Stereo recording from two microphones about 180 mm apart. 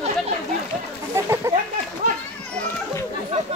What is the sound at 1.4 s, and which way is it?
Speech, 15° right (ahead or behind).